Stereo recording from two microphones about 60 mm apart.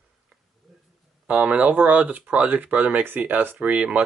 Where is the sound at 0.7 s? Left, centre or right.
Centre.